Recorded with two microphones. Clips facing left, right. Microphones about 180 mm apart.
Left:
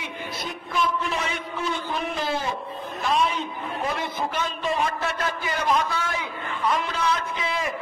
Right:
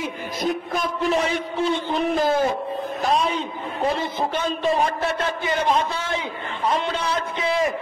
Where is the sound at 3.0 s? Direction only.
35° right (ahead or behind).